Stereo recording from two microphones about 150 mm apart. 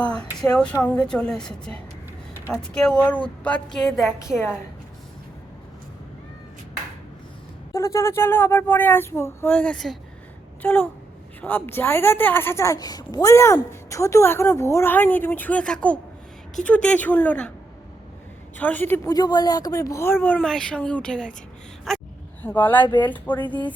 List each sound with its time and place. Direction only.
0.5 s a woman's voice: 5° left (ahead or behind)
4.2 s a woman's voice: 15° left (ahead or behind)
7.7 s a woman's voice: 20° left (ahead or behind)
18.5 s a woman's voice: 10° left (ahead or behind)
19.0 s a woman's voice: 25° left (ahead or behind); by 21.3 s 5° left (ahead or behind)
21.9 s a sound: centre (ahead or behind)
22.4 s a woman's voice: 10° left (ahead or behind)
22.9 s speech: 30° left (ahead or behind)